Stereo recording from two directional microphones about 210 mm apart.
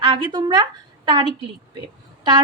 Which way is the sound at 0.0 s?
25° right (ahead or behind).